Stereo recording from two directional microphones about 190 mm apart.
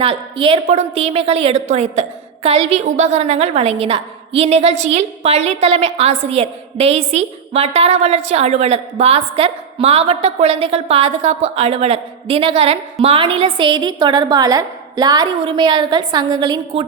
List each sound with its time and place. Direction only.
0.0 s a woman's voice: 30° right (ahead or behind)